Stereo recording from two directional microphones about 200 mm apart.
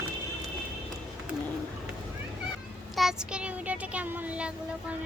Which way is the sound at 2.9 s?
Centre (ahead or behind).